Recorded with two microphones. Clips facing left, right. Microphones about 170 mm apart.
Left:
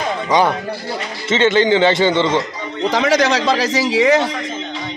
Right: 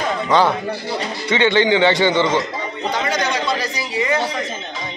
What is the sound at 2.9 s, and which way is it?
A man's voice, 90° left.